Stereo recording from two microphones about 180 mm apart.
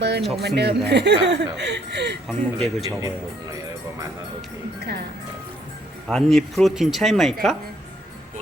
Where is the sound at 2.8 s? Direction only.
20° right (ahead or behind).